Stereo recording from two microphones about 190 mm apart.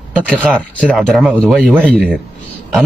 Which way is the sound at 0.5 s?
5° left (ahead or behind).